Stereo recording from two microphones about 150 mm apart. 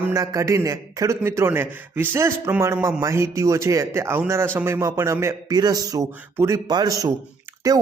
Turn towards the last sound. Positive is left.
turn(degrees=-25)  # may be behind; listen again after turning